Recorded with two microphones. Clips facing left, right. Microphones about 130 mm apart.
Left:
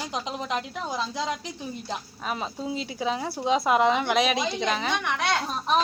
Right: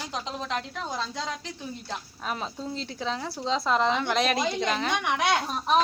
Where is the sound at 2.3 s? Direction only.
5° left (ahead or behind).